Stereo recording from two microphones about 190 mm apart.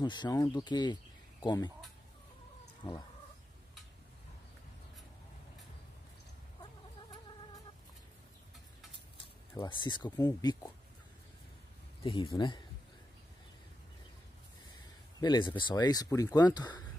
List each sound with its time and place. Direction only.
0.0 s speech: 20° left (ahead or behind)
2.8 s speech: 25° left (ahead or behind)
9.5 s speech: 20° left (ahead or behind)
12.0 s speech: 25° left (ahead or behind)
15.1 s speech: 25° left (ahead or behind)